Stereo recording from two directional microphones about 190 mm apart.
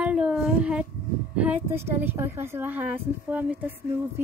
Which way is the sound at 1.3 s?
10° right (ahead or behind).